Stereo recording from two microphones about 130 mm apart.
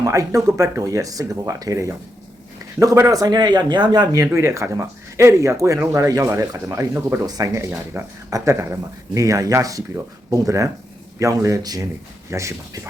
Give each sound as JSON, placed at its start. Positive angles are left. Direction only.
{"t": 0.0, "sound": "speech", "side_deg": -25}